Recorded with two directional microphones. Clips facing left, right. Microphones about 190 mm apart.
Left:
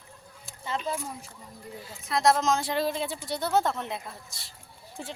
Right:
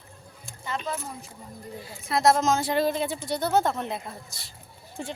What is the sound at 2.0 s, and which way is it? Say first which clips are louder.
A woman's voice: right 2 dB; 5° right (ahead or behind).